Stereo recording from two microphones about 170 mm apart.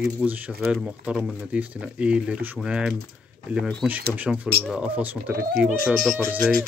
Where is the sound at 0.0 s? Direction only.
10° right (ahead or behind).